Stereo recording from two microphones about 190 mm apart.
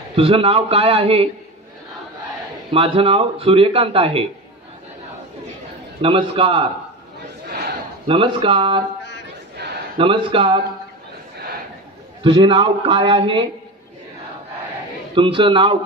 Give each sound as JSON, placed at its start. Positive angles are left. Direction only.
{"t": 0.1, "sound": "a man's voice", "side_deg": -30}
{"t": 2.7, "sound": "a man's voice", "side_deg": -30}
{"t": 5.9, "sound": "a man's voice", "side_deg": -30}
{"t": 8.1, "sound": "a man's voice", "side_deg": -30}
{"t": 9.6, "sound": "a sound", "side_deg": -60}
{"t": 9.9, "sound": "a man's voice", "side_deg": -25}
{"t": 12.2, "sound": "a man's voice", "side_deg": -25}
{"t": 15.1, "sound": "a man's voice", "side_deg": -25}